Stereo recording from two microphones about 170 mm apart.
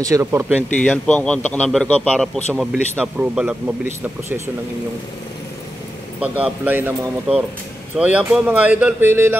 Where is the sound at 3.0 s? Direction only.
5° right (ahead or behind).